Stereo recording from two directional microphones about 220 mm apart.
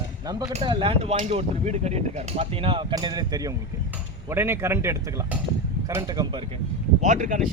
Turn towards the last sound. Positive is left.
turn(degrees=-35)  # may be behind; listen again after turning